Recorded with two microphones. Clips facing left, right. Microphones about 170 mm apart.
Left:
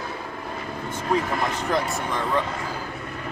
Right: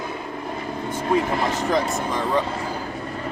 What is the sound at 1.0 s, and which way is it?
Speech, 25° right (ahead or behind).